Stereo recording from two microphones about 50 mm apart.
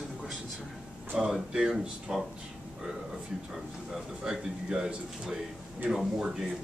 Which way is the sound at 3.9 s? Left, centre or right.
Centre.